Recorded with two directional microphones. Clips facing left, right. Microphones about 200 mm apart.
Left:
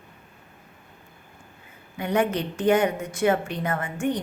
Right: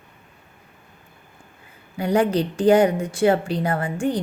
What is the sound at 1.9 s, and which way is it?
A woman's voice, 35° right (ahead or behind).